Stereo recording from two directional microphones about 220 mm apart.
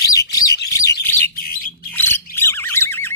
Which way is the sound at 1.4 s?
40° left (ahead or behind).